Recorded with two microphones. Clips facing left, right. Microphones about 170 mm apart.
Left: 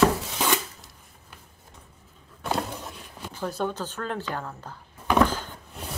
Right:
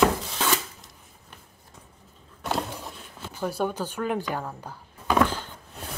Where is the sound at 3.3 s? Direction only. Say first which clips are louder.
Right 1 dB; 10° right (ahead or behind).